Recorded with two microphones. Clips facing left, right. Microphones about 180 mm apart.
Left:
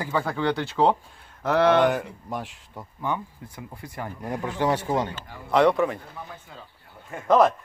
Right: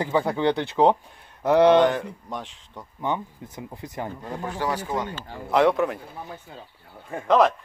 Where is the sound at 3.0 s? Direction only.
20° right (ahead or behind).